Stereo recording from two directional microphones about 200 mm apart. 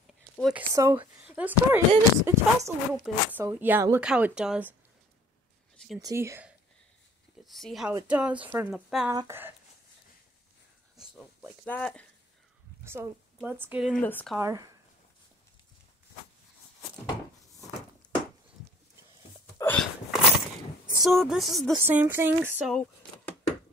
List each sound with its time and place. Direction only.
0.4 s speech: 5° right (ahead or behind)
0.7 s speech: 15° right (ahead or behind)
5.9 s speech: 15° right (ahead or behind)
7.4 s speech: centre (ahead or behind)
9.1 s speech: 15° right (ahead or behind)
11.0 s a sound: 5° right (ahead or behind)
11.6 s speech: 5° left (ahead or behind)
12.8 s a woman's voice: 10° right (ahead or behind)
14.0 s speech: 10° left (ahead or behind)
19.6 s a sound: 5° left (ahead or behind)
21.0 s speech: centre (ahead or behind)
21.8 s speech: 10° right (ahead or behind)
22.7 s a sound: 5° left (ahead or behind)